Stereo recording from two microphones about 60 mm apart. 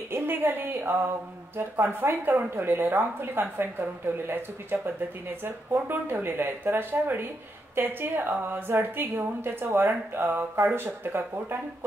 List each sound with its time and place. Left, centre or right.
0.1 s a woman's voice: right